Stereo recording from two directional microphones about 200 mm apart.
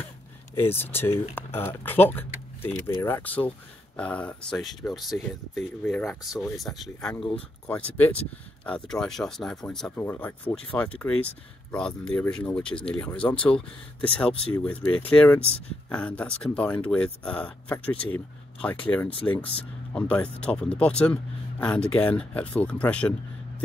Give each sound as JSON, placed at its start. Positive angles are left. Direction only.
{"t": 0.6, "sound": "speech", "side_deg": 10}